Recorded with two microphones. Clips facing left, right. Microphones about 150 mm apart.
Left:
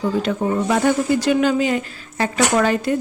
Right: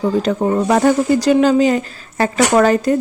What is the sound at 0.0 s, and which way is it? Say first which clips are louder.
Speech: right 4 dB; 40° right (ahead or behind).